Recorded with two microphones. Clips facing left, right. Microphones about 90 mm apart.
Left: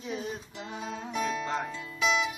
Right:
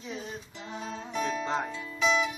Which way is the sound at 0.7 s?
5° left (ahead or behind).